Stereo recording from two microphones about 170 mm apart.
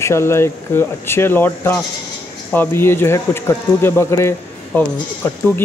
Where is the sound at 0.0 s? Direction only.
15° left (ahead or behind).